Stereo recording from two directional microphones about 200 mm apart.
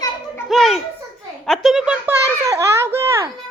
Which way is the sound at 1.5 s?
Centre (ahead or behind).